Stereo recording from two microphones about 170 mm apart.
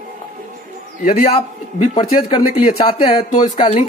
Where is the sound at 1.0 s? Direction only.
55° left (ahead or behind).